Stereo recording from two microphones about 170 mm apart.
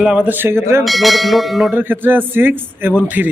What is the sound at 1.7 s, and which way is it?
Speech, 10° right (ahead or behind).